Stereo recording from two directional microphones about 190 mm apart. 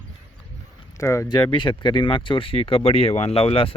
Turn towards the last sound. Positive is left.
turn(degrees=30)  # may be behind; listen again after turning